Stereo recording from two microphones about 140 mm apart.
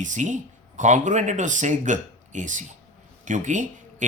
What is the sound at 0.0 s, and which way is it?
Speech, 60° right (ahead or behind).